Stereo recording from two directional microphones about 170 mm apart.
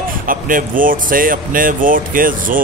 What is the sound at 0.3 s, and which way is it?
Speech, 55° right (ahead or behind).